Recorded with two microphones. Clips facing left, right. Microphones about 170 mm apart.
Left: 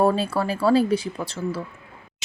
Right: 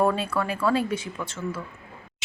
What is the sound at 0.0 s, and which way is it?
A woman's voice, 35° left (ahead or behind).